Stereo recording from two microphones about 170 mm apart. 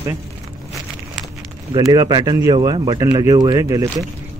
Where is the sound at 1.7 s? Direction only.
20° right (ahead or behind).